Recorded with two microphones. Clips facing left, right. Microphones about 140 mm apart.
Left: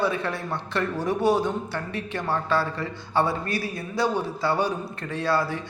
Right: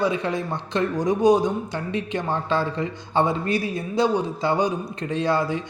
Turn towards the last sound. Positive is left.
turn(degrees=-20)  # may be behind; listen again after turning